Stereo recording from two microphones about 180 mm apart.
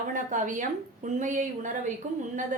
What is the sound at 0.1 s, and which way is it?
A woman's voice, 45° right (ahead or behind).